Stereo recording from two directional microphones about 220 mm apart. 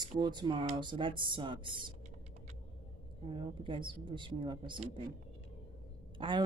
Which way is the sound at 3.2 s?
20° right (ahead or behind).